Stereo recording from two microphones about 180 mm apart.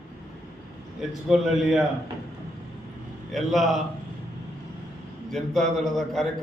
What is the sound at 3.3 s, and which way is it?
Speech, centre (ahead or behind).